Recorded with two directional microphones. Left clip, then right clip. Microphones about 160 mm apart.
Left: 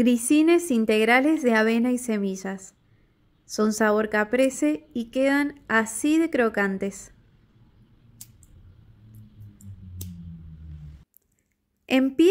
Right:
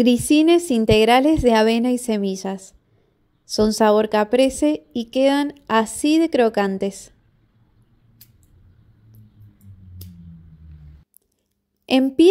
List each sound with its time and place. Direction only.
0.0 s speech: 25° right (ahead or behind)